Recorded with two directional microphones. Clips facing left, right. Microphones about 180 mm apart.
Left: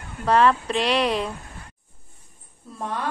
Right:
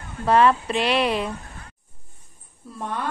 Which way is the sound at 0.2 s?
5° right (ahead or behind).